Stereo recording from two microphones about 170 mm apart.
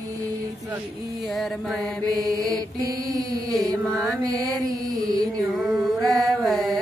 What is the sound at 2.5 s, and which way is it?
Mantra, 20° right (ahead or behind).